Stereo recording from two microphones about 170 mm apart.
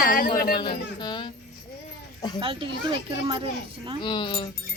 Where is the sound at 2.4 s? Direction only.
30° right (ahead or behind).